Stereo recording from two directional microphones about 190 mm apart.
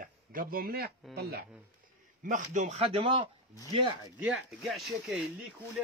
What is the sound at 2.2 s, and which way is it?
Speech, 40° right (ahead or behind).